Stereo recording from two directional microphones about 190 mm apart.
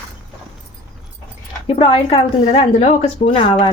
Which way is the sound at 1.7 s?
30° left (ahead or behind).